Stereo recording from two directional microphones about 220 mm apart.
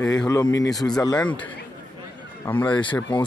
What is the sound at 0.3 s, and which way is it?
Speech, 15° left (ahead or behind).